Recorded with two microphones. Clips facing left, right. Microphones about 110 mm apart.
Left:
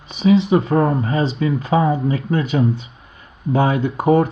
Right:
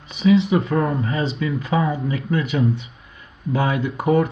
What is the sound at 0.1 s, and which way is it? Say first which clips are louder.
Speech: left 2 dB; 30° left (ahead or behind).